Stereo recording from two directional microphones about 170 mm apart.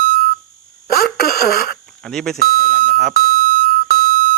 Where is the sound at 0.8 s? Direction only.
65° left (ahead or behind).